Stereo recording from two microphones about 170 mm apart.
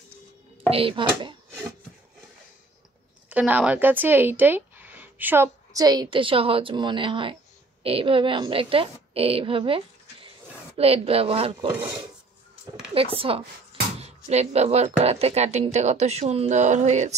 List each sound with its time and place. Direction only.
0.7 s speech: 30° right (ahead or behind)
3.3 s a woman's voice: 10° right (ahead or behind); by 11.5 s 35° right (ahead or behind)
12.9 s speech: 35° right (ahead or behind)